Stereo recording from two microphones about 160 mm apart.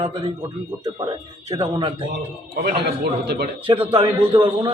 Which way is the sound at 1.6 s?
35° right (ahead or behind).